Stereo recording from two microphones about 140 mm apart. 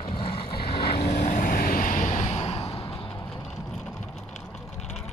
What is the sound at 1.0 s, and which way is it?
Vehicle, 65° left (ahead or behind).